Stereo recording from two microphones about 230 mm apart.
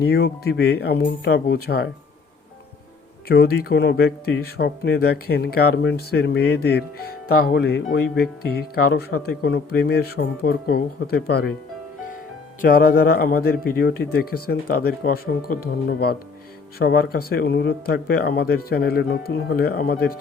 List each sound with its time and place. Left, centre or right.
0.0 s speech: left
3.2 s speech: left
12.6 s speech: left